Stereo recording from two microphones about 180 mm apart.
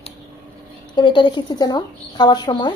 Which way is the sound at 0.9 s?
25° left (ahead or behind).